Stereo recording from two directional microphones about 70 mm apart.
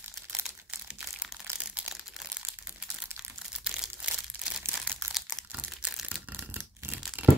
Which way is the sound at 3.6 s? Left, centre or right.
Centre.